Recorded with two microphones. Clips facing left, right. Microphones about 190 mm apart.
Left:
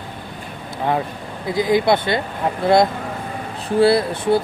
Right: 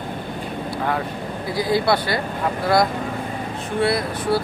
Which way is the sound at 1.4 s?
20° left (ahead or behind).